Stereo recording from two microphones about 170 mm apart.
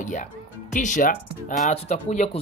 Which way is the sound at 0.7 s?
50° left (ahead or behind).